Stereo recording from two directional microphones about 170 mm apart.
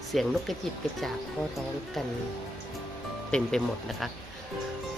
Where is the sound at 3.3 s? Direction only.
5° left (ahead or behind).